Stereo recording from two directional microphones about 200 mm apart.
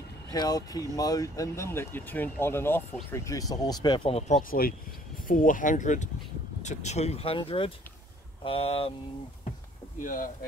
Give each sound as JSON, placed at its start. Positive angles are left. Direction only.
{"t": 0.3, "sound": "speech", "side_deg": 20}
{"t": 9.9, "sound": "speech", "side_deg": 40}